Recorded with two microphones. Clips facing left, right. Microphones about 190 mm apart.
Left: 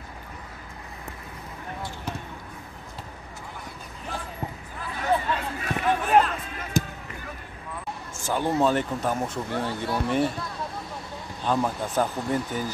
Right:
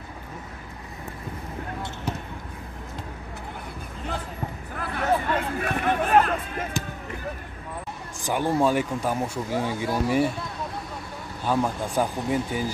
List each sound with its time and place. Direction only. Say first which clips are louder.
4.7 s a sound: right 1 dB; 60° right (ahead or behind)
8.2 s speech: right 1 dB; 15° right (ahead or behind)
11.4 s speech: right 1 dB; 10° right (ahead or behind)